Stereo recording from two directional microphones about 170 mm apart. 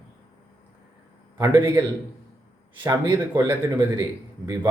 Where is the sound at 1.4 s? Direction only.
15° right (ahead or behind).